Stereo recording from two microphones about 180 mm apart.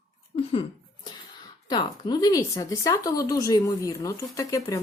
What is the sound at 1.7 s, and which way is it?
Speech, 25° left (ahead or behind).